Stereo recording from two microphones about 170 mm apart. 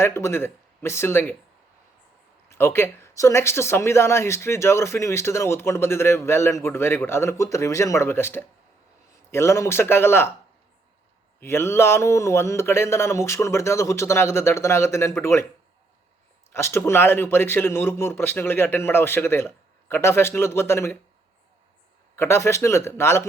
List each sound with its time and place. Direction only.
0.0 s speech: 15° left (ahead or behind)
2.5 s speech: 15° left (ahead or behind)
11.3 s speech: 15° left (ahead or behind)
16.5 s speech: 15° left (ahead or behind)
22.1 s speech: 15° left (ahead or behind)